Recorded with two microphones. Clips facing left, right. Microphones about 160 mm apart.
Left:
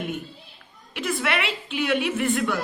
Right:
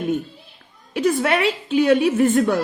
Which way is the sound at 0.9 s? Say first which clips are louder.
Right 8 dB; 40° right (ahead or behind).